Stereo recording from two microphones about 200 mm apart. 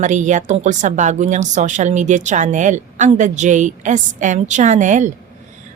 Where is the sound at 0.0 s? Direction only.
40° right (ahead or behind).